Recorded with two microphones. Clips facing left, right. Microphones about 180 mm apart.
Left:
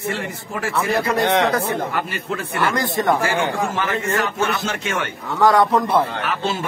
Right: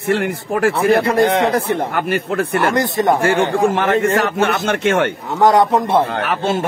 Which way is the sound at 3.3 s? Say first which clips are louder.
Right 7 dB; 60° right (ahead or behind).